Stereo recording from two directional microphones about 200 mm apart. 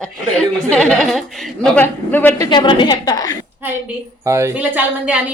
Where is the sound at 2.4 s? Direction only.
25° left (ahead or behind).